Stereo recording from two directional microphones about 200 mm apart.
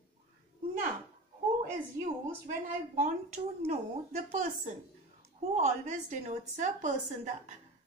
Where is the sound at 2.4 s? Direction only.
45° right (ahead or behind).